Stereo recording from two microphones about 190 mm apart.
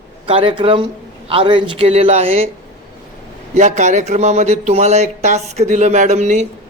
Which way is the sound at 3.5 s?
40° right (ahead or behind).